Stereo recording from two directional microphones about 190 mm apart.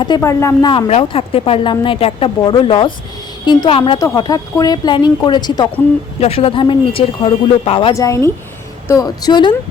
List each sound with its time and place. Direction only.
0.0 s speech: 20° left (ahead or behind)
0.7 s speech: 30° left (ahead or behind)
6.1 s speech: 30° left (ahead or behind)
7.9 s speech: 15° left (ahead or behind)